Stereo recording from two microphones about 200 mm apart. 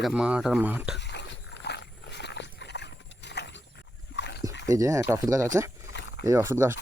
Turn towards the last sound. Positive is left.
turn(degrees=-10)  # may be behind; listen again after turning